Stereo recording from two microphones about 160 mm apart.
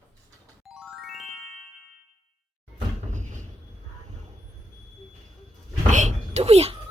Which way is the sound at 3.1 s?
50° right (ahead or behind).